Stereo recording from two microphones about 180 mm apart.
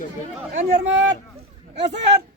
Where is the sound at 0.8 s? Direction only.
90° right.